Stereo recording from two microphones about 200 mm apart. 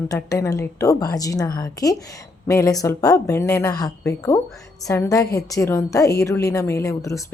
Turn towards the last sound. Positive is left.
turn(degrees=15)  # may be behind; listen again after turning